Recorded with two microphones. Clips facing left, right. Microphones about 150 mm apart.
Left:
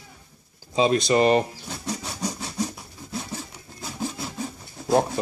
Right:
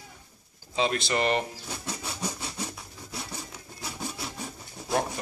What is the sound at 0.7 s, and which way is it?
Speech, 20° left (ahead or behind).